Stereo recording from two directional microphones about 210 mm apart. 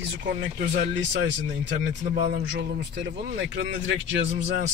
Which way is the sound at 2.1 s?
50° right (ahead or behind).